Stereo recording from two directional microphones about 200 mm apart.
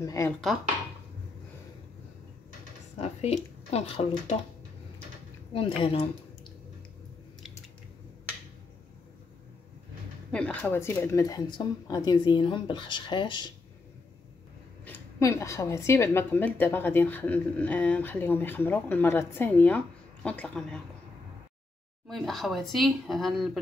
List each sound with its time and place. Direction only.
0.0 s a woman's voice: 15° left (ahead or behind)
3.0 s speech: 30° left (ahead or behind)
5.5 s a woman's voice: 25° left (ahead or behind)
10.3 s a woman's voice: 5° left (ahead or behind); by 13.5 s 25° left (ahead or behind)
14.9 s a woman's voice: 15° left (ahead or behind)
22.0 s speech: centre (ahead or behind)